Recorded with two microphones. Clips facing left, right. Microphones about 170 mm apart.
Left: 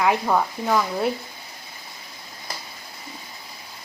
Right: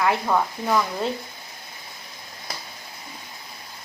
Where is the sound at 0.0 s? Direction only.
10° left (ahead or behind).